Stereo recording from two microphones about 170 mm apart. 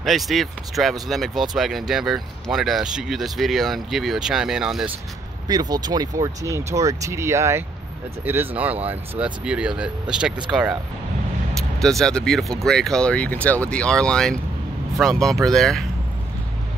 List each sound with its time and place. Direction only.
0.0 s speech: centre (ahead or behind)
5.5 s speech: 25° right (ahead or behind); by 10.3 s 5° right (ahead or behind)
11.8 s speech: centre (ahead or behind)